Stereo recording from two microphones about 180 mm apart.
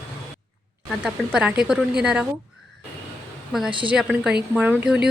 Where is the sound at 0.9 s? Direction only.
5° right (ahead or behind).